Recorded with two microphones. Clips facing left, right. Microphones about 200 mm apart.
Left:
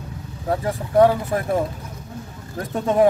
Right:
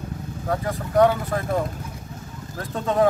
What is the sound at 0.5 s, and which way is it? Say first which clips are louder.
Speech: left 3 dB; 25° left (ahead or behind).